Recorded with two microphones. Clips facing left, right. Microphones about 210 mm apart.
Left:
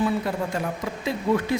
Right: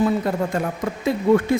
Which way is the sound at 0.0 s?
45° right (ahead or behind).